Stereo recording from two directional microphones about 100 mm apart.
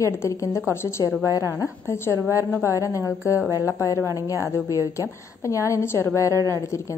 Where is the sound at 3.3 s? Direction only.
25° right (ahead or behind).